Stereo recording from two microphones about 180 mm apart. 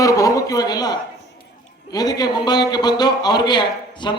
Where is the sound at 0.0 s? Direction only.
20° left (ahead or behind).